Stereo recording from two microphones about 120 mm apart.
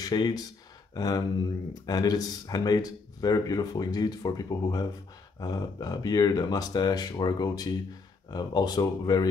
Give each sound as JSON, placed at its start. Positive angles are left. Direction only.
{"t": 0.0, "sound": "speech", "side_deg": 35}